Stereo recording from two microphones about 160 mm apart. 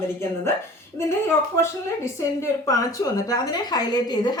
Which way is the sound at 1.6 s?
20° left (ahead or behind).